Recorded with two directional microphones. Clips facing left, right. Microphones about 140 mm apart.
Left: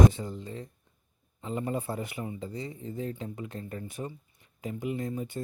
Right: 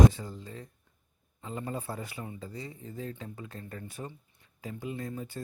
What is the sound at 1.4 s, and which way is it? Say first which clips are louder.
A man's voice: left 5 dB; 20° left (ahead or behind).